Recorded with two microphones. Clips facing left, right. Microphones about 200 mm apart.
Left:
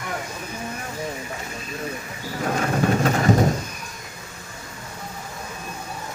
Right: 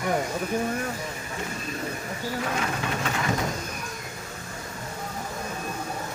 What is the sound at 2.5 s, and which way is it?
Rain, 45° left (ahead or behind).